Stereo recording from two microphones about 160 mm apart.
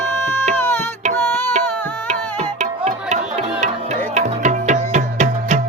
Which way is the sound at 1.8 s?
10° left (ahead or behind).